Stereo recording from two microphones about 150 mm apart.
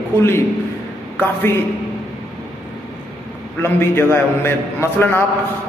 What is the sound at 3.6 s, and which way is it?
Speech, 15° left (ahead or behind).